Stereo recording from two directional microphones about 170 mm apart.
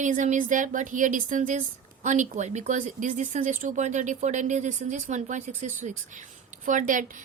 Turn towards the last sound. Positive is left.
turn(degrees=-50)  # may be behind; listen again after turning